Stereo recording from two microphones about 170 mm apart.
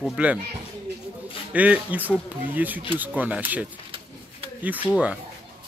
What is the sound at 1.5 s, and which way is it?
Speech, 10° right (ahead or behind).